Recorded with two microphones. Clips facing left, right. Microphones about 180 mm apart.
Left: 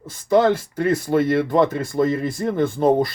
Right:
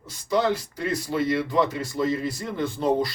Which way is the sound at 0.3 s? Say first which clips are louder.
Left 7 dB; 50° left (ahead or behind).